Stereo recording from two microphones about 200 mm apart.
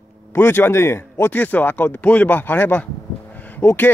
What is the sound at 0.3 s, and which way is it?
Speech, 10° left (ahead or behind).